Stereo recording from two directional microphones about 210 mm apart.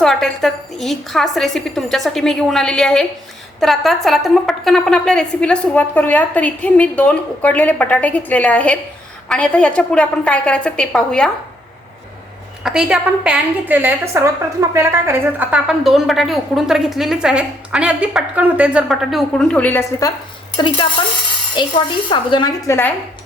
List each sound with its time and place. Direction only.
0.0 s a woman's voice: centre (ahead or behind)
12.6 s a woman's voice: 5° right (ahead or behind); by 20.1 s 15° left (ahead or behind)
21.6 s a woman's voice: 20° left (ahead or behind)